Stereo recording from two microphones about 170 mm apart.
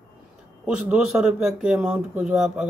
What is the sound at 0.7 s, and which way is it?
Speech, 5° right (ahead or behind).